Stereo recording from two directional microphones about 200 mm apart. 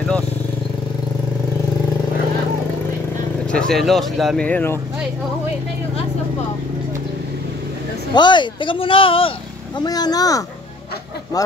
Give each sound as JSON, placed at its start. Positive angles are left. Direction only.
{"t": 3.5, "sound": "speech", "side_deg": 0}
{"t": 8.1, "sound": "speech", "side_deg": 20}